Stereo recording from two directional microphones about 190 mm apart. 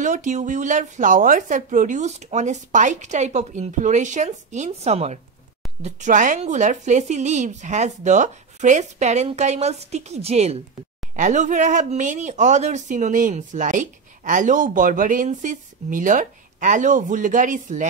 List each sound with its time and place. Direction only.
0.0 s speech: 40° right (ahead or behind)